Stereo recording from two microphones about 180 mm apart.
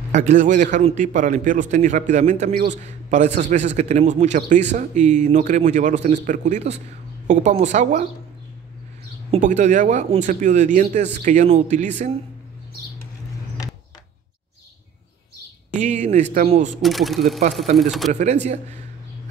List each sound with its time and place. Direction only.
0.1 s a man's voice: 40° right (ahead or behind)
9.3 s speech: 40° right (ahead or behind)
15.8 s speech: 40° right (ahead or behind)
16.7 s speech: centre (ahead or behind)
18.2 s speech: 40° right (ahead or behind)